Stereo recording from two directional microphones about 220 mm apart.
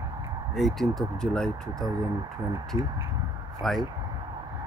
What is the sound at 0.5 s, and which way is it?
Speech, centre (ahead or behind).